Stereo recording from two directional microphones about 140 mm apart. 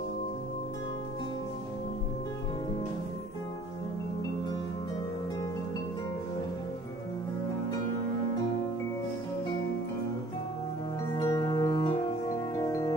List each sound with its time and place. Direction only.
11.1 s music: 25° left (ahead or behind)
12.5 s music: 20° left (ahead or behind)